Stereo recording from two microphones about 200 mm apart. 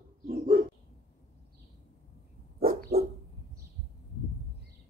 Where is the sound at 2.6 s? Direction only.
45° right (ahead or behind).